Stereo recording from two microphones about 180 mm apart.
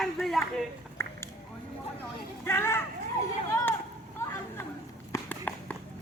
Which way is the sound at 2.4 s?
15° left (ahead or behind).